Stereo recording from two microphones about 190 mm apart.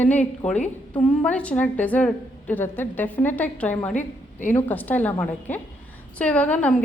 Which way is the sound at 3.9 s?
40° left (ahead or behind).